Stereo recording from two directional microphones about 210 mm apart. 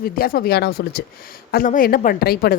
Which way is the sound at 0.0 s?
45° left (ahead or behind).